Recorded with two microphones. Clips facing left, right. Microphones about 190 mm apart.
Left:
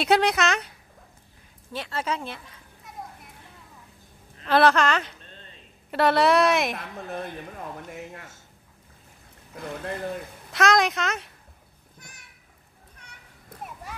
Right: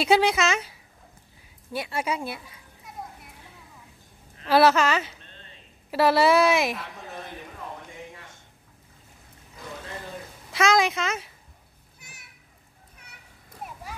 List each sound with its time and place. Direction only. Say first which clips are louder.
0.0 s a woman's voice: even; centre (ahead or behind)
4.5 s a woman's voice: right 1 dB; 5° right (ahead or behind)
6.7 s speech: left 2 dB; 55° left (ahead or behind)
9.5 s boat: left 6 dB; 60° left (ahead or behind)
10.5 s speech: even; centre (ahead or behind)
12.0 s children playing: left 2 dB; 5° right (ahead or behind)